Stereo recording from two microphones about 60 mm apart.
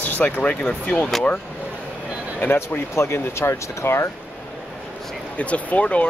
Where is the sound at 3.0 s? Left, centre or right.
Left.